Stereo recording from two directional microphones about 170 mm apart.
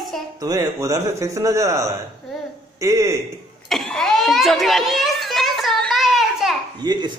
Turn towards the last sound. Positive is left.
turn(degrees=-25)  # may be behind; listen again after turning